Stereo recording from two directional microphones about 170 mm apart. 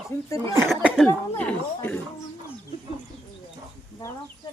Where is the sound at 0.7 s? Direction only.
Centre (ahead or behind).